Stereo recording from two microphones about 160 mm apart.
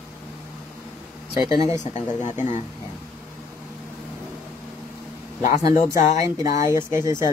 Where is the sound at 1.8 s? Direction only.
50° left (ahead or behind).